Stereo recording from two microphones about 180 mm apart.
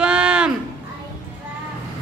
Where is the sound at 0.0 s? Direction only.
5° right (ahead or behind).